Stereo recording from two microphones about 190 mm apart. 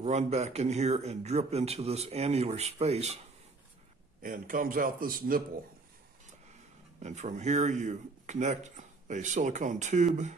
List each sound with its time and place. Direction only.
0.0 s speech: 35° right (ahead or behind)
4.2 s a man's voice: 45° right (ahead or behind)
7.0 s speech: 40° right (ahead or behind)